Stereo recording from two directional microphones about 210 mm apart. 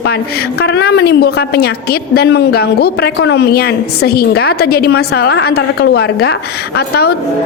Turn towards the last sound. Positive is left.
turn(degrees=50)  # may be behind; listen again after turning